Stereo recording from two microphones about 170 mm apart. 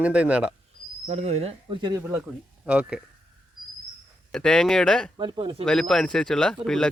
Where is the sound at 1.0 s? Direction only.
40° right (ahead or behind); by 3.0 s 5° right (ahead or behind).